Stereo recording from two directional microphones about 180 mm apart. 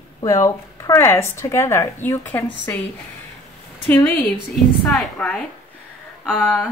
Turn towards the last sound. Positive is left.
turn(degrees=5)  # may be behind; listen again after turning